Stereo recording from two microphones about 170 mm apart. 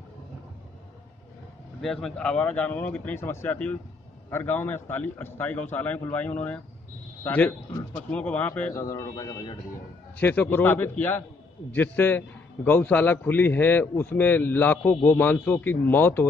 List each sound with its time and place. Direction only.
1.8 s a man's voice: centre (ahead or behind)
8.7 s a man's voice: 20° left (ahead or behind)